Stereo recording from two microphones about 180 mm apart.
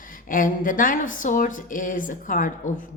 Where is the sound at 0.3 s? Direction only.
50° left (ahead or behind).